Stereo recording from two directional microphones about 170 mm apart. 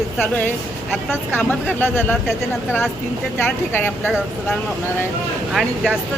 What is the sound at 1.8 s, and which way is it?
Speech, 10° left (ahead or behind).